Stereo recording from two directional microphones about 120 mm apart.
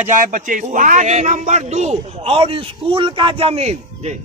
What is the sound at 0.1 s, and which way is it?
Speech, 90° right.